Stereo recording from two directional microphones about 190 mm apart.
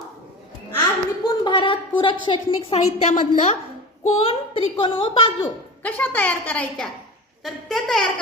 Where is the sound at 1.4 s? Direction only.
25° left (ahead or behind).